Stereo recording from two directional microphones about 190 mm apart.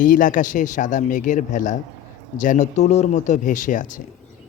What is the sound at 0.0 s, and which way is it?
Speech, 45° left (ahead or behind).